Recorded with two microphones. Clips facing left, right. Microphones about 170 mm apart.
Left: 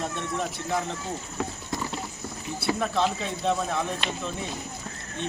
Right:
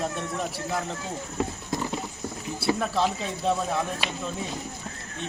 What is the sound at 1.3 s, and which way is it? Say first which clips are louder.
Wild animals: right 5 dB; 20° right (ahead or behind).